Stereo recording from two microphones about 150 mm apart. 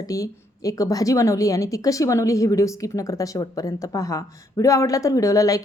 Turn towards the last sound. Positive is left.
turn(degrees=20)  # may be behind; listen again after turning